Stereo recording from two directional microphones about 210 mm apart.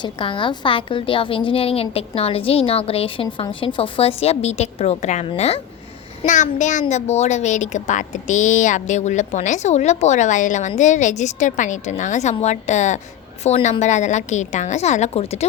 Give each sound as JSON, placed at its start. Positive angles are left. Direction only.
{"t": 0.0, "sound": "a woman's voice", "side_deg": 25}